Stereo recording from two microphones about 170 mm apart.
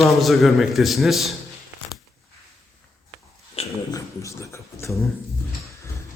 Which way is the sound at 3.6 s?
35° left (ahead or behind).